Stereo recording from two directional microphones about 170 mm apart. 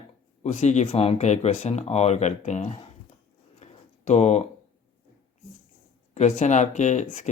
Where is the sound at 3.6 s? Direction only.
40° left (ahead or behind).